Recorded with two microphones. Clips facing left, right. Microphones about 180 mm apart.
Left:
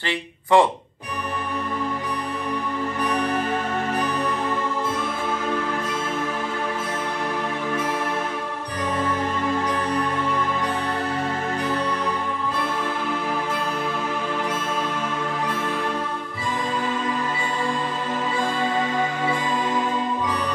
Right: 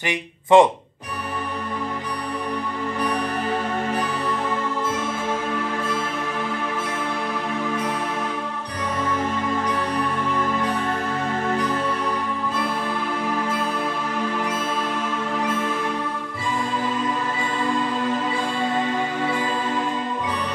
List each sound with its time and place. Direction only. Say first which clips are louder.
0.0 s speech: right 1 dB; 20° right (ahead or behind)